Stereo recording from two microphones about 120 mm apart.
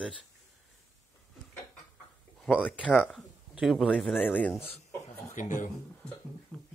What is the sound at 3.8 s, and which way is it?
Speech, 10° left (ahead or behind).